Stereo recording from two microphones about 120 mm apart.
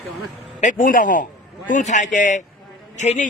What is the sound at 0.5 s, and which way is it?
Speech, 90° left.